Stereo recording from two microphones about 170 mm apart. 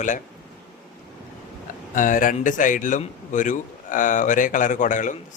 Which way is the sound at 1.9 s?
50° left (ahead or behind).